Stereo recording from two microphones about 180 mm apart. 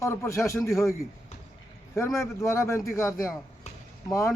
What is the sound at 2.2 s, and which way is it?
Speech, 15° left (ahead or behind).